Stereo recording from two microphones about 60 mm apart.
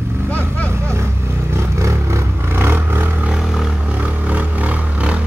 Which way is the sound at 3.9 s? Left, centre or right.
Right.